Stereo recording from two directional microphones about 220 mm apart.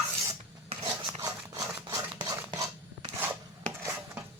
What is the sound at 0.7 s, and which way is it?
Filing, 20° right (ahead or behind).